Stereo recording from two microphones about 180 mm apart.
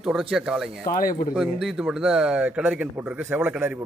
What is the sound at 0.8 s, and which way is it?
Speech, 50° left (ahead or behind).